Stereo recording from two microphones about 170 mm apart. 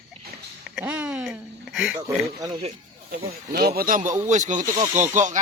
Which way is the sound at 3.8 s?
55° right (ahead or behind).